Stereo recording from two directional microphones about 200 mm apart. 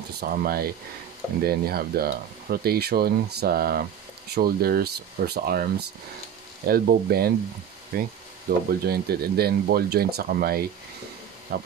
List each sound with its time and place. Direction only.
0.2 s speech: 50° right (ahead or behind)